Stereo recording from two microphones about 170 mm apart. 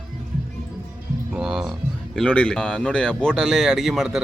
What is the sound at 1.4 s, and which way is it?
Music, centre (ahead or behind).